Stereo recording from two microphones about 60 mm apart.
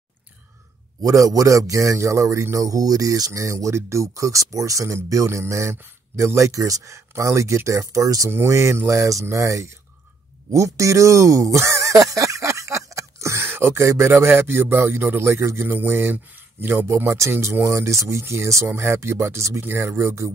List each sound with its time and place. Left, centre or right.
1.0 s a man's voice: right
2.5 s speech: right
7.8 s a man's voice: right
8.3 s speech: right
10.5 s a sound: right
13.5 s speech: right
19.6 s speech: right